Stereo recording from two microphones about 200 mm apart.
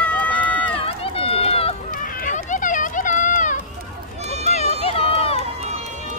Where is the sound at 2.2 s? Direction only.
40° left (ahead or behind).